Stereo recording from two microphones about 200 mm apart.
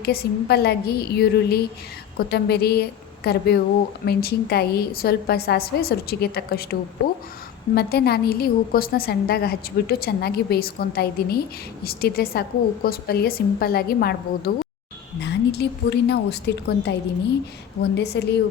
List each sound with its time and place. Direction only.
0.0 s a woman's voice: 50° left (ahead or behind)
7.8 s a woman's voice: 50° left (ahead or behind)